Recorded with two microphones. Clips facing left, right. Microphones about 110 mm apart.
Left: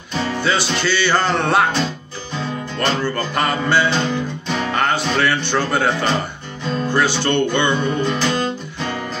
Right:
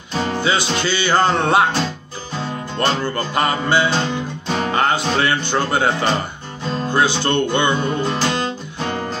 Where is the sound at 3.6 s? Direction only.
20° right (ahead or behind).